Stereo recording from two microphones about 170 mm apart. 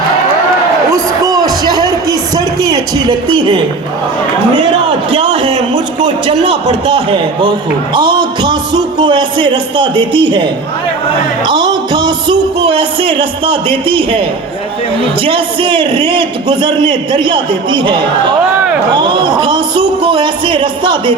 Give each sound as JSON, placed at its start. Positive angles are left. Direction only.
{"t": 0.9, "sound": "a sound", "side_deg": -20}
{"t": 6.0, "sound": "a man's voice", "side_deg": -30}
{"t": 11.4, "sound": "music", "side_deg": -25}
{"t": 15.2, "sound": "a man's voice", "side_deg": -30}